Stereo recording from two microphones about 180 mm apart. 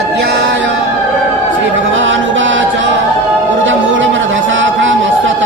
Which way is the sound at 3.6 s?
90° right.